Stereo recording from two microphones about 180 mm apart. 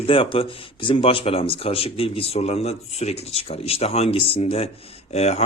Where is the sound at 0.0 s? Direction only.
30° left (ahead or behind).